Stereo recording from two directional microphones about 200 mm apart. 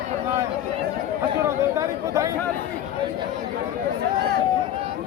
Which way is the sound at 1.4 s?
15° right (ahead or behind).